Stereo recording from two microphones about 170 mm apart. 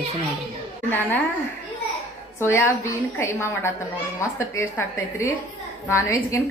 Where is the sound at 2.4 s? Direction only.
15° left (ahead or behind).